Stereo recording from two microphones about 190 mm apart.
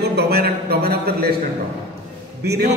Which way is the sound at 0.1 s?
55° right (ahead or behind).